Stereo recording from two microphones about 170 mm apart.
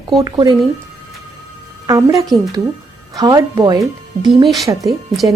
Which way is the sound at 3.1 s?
25° right (ahead or behind).